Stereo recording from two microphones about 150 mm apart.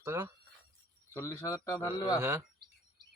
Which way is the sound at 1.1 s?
20° left (ahead or behind).